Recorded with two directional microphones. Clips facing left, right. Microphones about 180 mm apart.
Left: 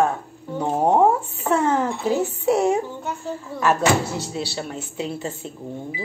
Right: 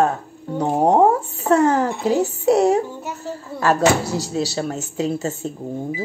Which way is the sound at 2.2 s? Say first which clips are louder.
Right 5 dB; 35° right (ahead or behind).